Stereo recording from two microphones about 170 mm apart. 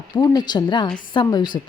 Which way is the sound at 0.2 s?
25° left (ahead or behind).